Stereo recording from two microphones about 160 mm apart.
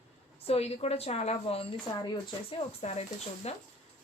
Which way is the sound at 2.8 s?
40° left (ahead or behind).